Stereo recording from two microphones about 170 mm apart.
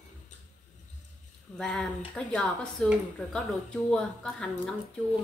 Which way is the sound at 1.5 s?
5° left (ahead or behind).